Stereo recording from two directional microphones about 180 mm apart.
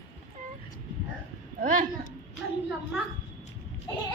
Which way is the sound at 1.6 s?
45° right (ahead or behind).